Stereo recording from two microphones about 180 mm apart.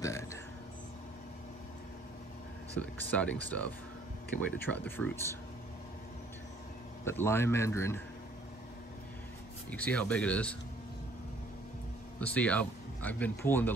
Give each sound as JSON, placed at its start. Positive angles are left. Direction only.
{"t": 0.0, "sound": "a sound", "side_deg": 15}
{"t": 2.8, "sound": "speech", "side_deg": 10}
{"t": 7.1, "sound": "speech", "side_deg": 15}
{"t": 9.7, "sound": "speech", "side_deg": 5}
{"t": 12.2, "sound": "speech", "side_deg": 5}